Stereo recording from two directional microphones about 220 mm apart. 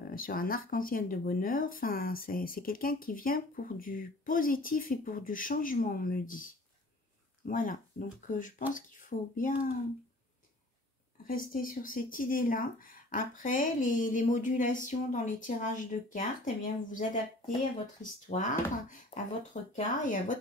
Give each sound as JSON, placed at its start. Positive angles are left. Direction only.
{"t": 0.1, "sound": "speech", "side_deg": 40}
{"t": 11.2, "sound": "speech", "side_deg": 40}
{"t": 18.3, "sound": "speech", "side_deg": 35}